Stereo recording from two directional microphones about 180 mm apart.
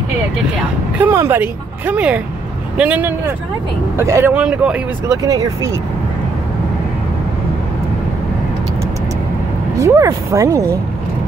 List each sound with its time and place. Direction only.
0.9 s speech: 10° right (ahead or behind)
5.0 s speech: 20° right (ahead or behind)
9.8 s speech: 15° right (ahead or behind)